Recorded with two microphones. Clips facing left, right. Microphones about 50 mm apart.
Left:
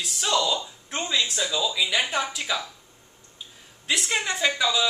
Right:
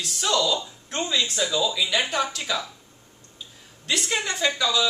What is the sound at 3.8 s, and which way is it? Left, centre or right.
Speech, centre.